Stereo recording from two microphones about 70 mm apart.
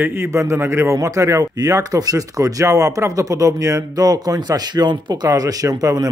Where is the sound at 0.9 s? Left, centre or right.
Right.